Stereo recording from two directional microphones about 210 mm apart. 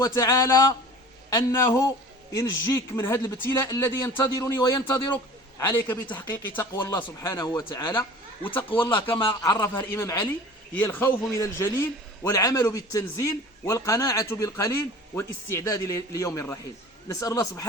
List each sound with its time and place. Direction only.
0.0 s a man's voice: 15° left (ahead or behind)
8.8 s a man's voice: 10° left (ahead or behind)